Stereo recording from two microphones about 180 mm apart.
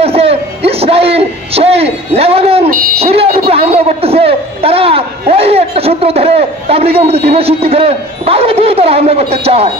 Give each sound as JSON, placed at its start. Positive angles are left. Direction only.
{"t": 0.0, "sound": "a man's voice", "side_deg": -35}